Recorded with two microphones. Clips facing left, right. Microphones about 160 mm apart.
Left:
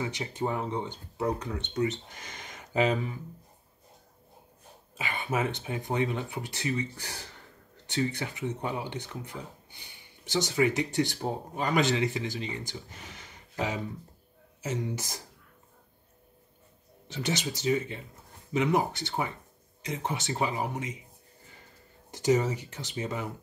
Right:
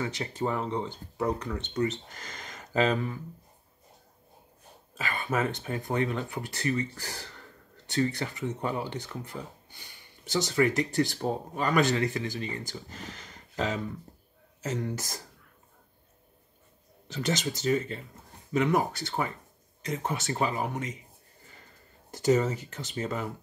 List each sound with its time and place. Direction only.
0.0 s speech: 15° left (ahead or behind)
0.8 s speech: 20° left (ahead or behind)
4.9 s speech: 20° left (ahead or behind)
13.1 s a sound: 15° left (ahead or behind)
14.7 s speech: 45° right (ahead or behind)
17.1 s speech: 45° right (ahead or behind)
17.6 s speech: 10° left (ahead or behind)
22.1 s speech: 20° left (ahead or behind)
22.6 s speech: centre (ahead or behind)
22.9 s speech: 15° left (ahead or behind)